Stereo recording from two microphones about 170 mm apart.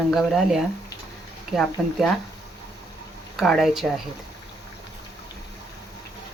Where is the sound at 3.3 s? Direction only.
Centre (ahead or behind).